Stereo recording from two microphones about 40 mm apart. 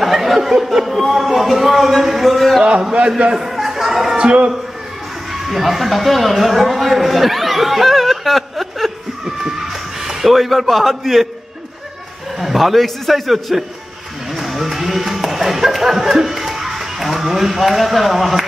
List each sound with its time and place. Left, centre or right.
0.0 s a sound: centre
0.7 s speech: centre
3.3 s a sound: centre
4.2 s a man's voice: right
5.3 s speech: centre
9.2 s a man's voice: centre
12.4 s speech: centre